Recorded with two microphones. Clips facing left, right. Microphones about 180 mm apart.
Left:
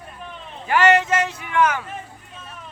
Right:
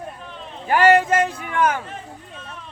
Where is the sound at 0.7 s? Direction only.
35° right (ahead or behind).